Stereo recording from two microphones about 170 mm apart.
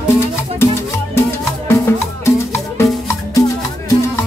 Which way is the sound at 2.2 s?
15° left (ahead or behind).